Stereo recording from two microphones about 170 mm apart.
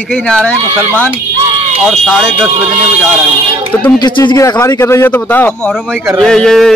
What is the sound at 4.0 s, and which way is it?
Speech, 25° left (ahead or behind).